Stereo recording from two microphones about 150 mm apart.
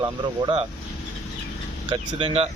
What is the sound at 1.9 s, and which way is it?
Speech, 40° right (ahead or behind).